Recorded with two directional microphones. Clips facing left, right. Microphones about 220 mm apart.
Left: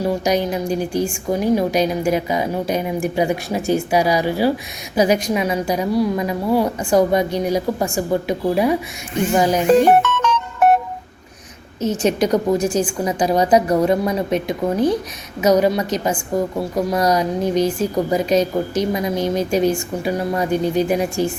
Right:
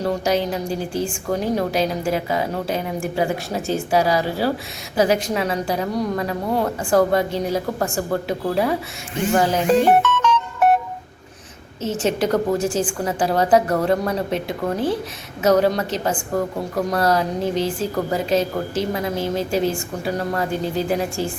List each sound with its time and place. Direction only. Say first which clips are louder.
0.0 s a woman's voice: left 2 dB; 15° left (ahead or behind)
11.8 s a woman's voice: left 3 dB; 15° left (ahead or behind)